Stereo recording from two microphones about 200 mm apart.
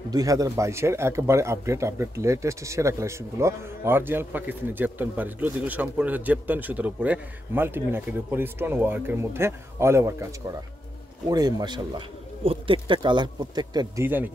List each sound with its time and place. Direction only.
0.1 s speech: 15° right (ahead or behind)
11.2 s speech: 20° right (ahead or behind)